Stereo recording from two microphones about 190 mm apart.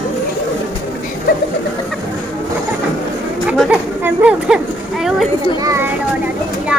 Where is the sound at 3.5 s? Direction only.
5° right (ahead or behind).